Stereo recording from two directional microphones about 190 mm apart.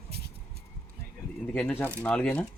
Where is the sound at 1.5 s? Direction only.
10° left (ahead or behind).